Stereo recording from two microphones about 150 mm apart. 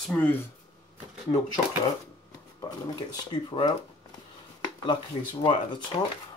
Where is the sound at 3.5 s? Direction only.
35° left (ahead or behind).